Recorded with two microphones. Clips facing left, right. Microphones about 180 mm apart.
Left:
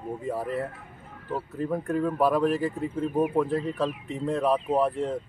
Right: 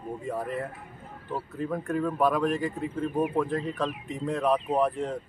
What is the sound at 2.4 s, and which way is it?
Speech, 35° left (ahead or behind).